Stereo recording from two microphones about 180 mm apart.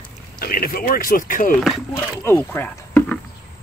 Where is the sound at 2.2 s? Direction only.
10° left (ahead or behind).